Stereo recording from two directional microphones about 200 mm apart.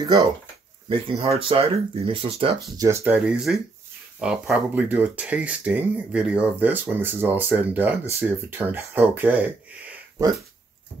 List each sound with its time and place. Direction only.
0.0 s speech: 20° right (ahead or behind)
2.8 s speech: 15° right (ahead or behind)